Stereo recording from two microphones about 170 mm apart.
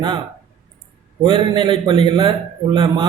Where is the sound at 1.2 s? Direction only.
30° right (ahead or behind).